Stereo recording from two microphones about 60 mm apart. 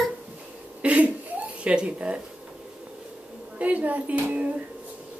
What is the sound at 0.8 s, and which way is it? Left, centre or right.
Laughter, right.